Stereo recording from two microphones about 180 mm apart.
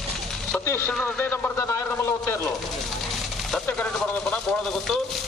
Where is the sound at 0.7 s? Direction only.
15° left (ahead or behind).